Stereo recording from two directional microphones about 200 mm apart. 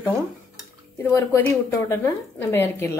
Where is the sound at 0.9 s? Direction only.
15° left (ahead or behind).